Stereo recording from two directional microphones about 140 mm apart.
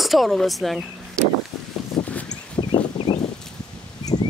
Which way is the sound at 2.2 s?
35° left (ahead or behind).